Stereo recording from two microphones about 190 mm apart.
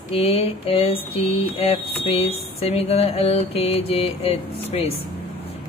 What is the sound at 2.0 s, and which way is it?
Mantra, 30° left (ahead or behind).